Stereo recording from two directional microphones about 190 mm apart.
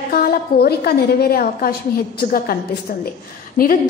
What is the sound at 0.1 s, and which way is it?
A woman's voice, 55° left (ahead or behind).